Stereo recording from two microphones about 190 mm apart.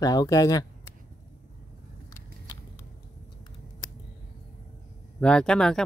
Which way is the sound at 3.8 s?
20° left (ahead or behind).